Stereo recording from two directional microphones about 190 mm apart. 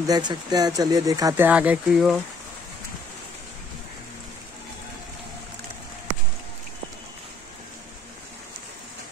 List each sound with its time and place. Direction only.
0.0 s speech: 20° right (ahead or behind); by 2.1 s 5° right (ahead or behind)